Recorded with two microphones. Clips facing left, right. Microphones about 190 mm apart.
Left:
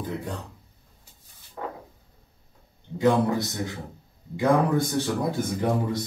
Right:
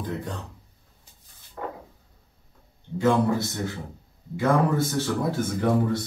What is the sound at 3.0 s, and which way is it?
A man's voice, 15° left (ahead or behind).